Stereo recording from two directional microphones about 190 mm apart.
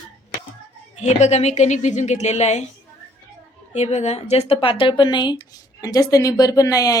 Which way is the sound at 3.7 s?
35° left (ahead or behind).